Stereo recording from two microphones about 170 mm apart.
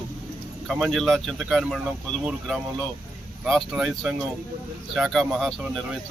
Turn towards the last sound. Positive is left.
turn(degrees=0)  # may be behind; listen again after turning